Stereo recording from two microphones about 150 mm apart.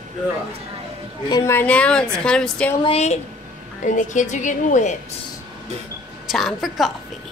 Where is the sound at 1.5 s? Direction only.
10° left (ahead or behind).